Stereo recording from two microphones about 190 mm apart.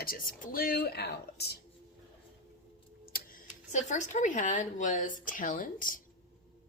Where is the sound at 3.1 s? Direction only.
50° left (ahead or behind).